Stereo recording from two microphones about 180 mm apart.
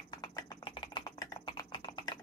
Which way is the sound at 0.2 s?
25° left (ahead or behind).